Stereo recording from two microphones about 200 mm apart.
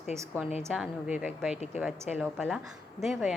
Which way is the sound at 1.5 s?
35° left (ahead or behind).